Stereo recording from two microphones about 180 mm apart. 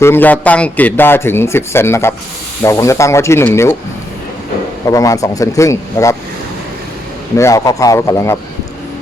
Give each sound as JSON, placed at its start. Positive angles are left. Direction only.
{"t": 0.0, "sound": "a man's voice", "side_deg": 10}
{"t": 4.9, "sound": "a man's voice", "side_deg": 20}
{"t": 7.3, "sound": "a man's voice", "side_deg": 15}